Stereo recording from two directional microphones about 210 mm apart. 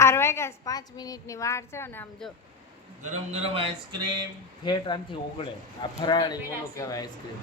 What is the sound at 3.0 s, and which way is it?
Speech, 30° right (ahead or behind).